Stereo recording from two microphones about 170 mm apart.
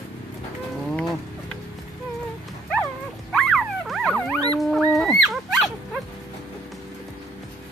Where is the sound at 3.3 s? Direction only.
Centre (ahead or behind).